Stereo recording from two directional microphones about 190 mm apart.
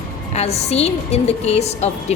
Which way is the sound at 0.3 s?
35° left (ahead or behind).